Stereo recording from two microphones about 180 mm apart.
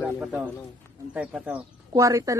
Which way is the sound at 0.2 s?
5° right (ahead or behind).